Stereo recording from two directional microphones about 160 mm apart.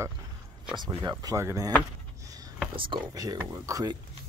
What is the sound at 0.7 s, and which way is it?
Speech, 25° right (ahead or behind).